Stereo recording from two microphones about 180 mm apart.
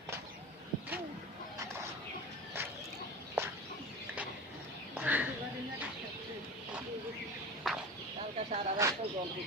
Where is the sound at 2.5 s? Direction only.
10° right (ahead or behind).